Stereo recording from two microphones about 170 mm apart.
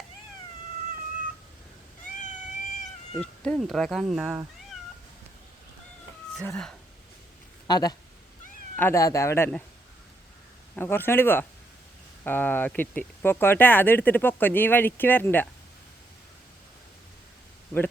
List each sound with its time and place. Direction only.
2.2 s cat: 45° left (ahead or behind)
3.2 s speech: 5° left (ahead or behind)
6.5 s speech: 5° left (ahead or behind)
7.7 s speech: 25° left (ahead or behind)
8.7 s speech: 15° left (ahead or behind)
10.8 s speech: 15° left (ahead or behind)